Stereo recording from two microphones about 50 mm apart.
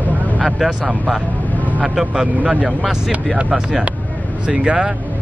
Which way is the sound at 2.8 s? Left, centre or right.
Centre.